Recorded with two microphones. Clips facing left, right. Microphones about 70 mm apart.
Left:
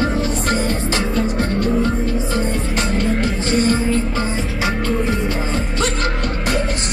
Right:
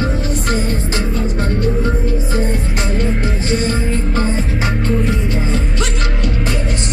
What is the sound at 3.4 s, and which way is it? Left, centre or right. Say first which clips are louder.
Music: left 2 dB; left.